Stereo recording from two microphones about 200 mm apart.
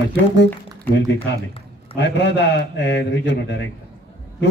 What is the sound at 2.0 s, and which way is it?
A man's voice, 60° left (ahead or behind).